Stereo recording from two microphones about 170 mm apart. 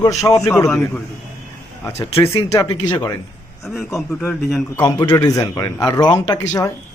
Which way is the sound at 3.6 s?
Centre (ahead or behind).